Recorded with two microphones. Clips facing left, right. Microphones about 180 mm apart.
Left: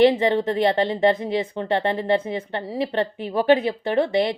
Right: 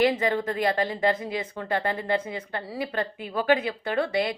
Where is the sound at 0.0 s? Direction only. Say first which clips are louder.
Left 6 dB; 25° left (ahead or behind).